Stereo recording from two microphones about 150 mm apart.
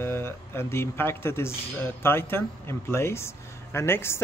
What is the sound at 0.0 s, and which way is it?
Speech, 15° left (ahead or behind).